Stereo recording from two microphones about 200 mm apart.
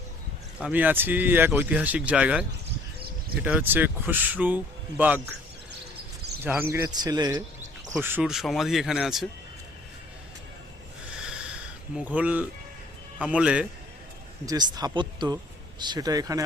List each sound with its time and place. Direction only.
0.6 s speech: 10° right (ahead or behind)
6.4 s speech: 10° right (ahead or behind)
8.0 s speech: 5° right (ahead or behind)
11.2 s a sound: 5° right (ahead or behind)
11.9 s speech: 5° right (ahead or behind)
14.4 s speech: 20° right (ahead or behind)